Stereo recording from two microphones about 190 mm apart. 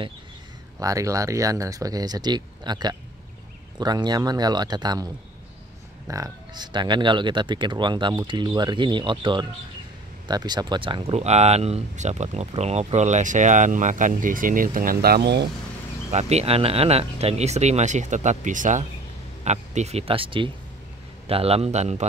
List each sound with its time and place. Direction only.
0.7 s speech: 15° right (ahead or behind); by 15.4 s 60° right (ahead or behind)
16.1 s speech: 35° right (ahead or behind)